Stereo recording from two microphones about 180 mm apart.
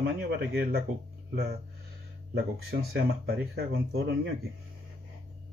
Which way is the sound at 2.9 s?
60° right (ahead or behind).